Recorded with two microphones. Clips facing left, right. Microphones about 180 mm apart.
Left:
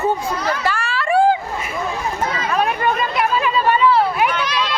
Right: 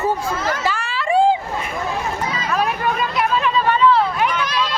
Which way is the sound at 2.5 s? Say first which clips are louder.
Left 1 dB; centre (ahead or behind).